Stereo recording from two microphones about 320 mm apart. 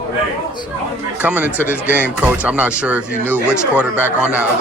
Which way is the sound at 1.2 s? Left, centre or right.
Centre.